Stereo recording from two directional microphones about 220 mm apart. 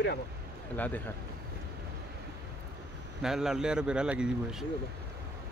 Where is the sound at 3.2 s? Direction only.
Centre (ahead or behind).